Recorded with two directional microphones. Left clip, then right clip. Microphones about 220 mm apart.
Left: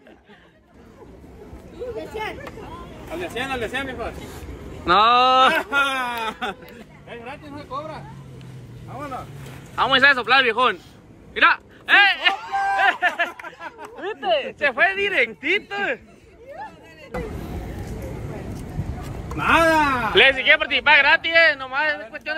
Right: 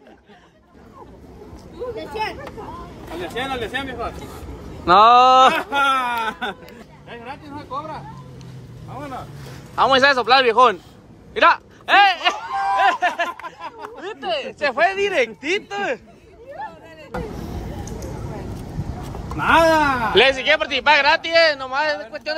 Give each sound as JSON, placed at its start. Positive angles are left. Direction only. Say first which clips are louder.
{"t": 2.0, "sound": "hubbub", "louder": "right 4 dB", "side_deg": 0}
{"t": 4.8, "sound": "a man's voice", "louder": "right 4 dB", "side_deg": -20}
{"t": 5.8, "sound": "speech", "louder": "right 3 dB", "side_deg": 0}
{"t": 9.8, "sound": "a man's voice", "louder": "right 1 dB", "side_deg": -20}
{"t": 11.3, "sound": "a sound", "louder": "right 2 dB", "side_deg": -20}
{"t": 13.3, "sound": "speech", "louder": "right 4 dB", "side_deg": 0}
{"t": 19.0, "sound": "speech", "louder": "right 2 dB", "side_deg": 0}
{"t": 20.2, "sound": "a man's voice", "louder": "left 1 dB", "side_deg": -15}